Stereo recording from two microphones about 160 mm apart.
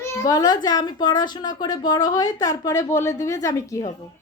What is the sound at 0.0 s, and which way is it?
A woman's voice, 20° left (ahead or behind).